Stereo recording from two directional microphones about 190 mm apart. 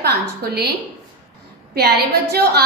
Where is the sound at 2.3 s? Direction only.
55° right (ahead or behind).